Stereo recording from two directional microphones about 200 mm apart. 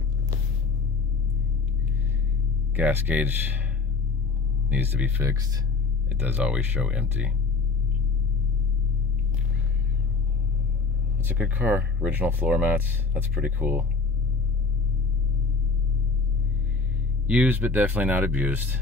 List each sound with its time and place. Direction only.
2.7 s speech: 10° right (ahead or behind)
4.6 s speech: 10° right (ahead or behind)
11.1 s speech: 10° right (ahead or behind)
17.3 s speech: 10° right (ahead or behind)